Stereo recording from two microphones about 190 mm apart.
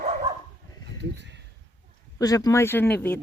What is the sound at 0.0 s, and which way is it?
Dog, 35° right (ahead or behind).